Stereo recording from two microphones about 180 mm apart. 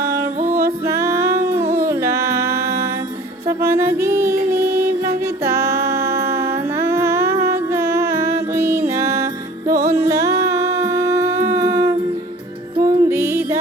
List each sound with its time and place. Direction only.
0.1 s music: 15° right (ahead or behind)
3.7 s music: 15° right (ahead or behind)
11.5 s humming: 15° right (ahead or behind)
12.8 s music: 15° right (ahead or behind)